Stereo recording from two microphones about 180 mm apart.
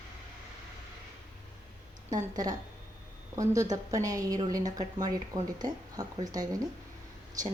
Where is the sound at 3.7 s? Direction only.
20° right (ahead or behind).